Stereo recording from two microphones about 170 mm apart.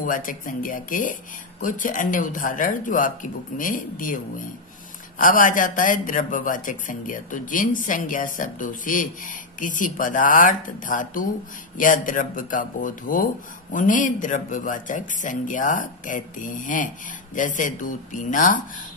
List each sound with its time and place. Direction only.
0.0 s a man's voice: 55° left (ahead or behind)